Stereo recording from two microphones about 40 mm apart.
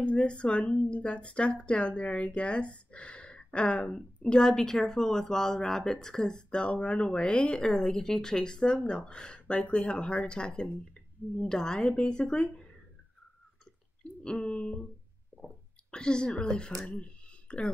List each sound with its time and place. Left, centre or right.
0.0 s speech: left
7.7 s a woman's voice: centre
14.2 s speech: left
15.3 s a sound: right
15.9 s speech: left